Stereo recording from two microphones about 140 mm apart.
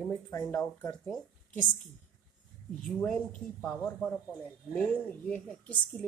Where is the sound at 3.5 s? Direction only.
10° left (ahead or behind).